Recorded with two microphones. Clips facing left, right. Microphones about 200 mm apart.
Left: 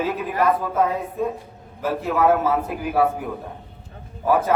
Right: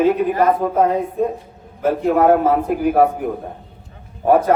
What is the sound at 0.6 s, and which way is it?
A man's voice, 50° right (ahead or behind).